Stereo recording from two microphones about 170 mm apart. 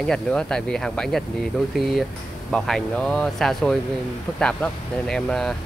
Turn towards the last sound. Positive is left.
turn(degrees=5)  # may be behind; listen again after turning